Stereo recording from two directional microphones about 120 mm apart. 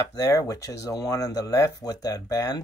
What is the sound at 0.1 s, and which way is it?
Speech, 30° left (ahead or behind).